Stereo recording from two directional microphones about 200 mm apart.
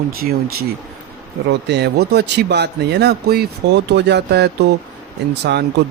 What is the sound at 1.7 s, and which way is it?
Speech, 55° right (ahead or behind).